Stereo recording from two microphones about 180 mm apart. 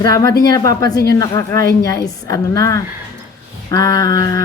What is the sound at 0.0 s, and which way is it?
A woman's voice, 20° left (ahead or behind).